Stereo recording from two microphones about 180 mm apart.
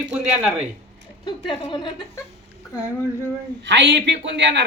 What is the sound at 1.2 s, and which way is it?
A woman's voice, 25° left (ahead or behind).